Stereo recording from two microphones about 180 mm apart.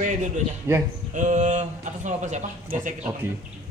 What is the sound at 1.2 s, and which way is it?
Speech, 45° right (ahead or behind).